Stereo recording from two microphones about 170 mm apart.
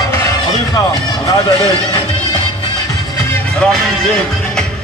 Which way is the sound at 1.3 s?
25° left (ahead or behind).